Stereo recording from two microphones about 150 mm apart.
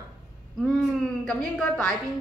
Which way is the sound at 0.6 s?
5° left (ahead or behind).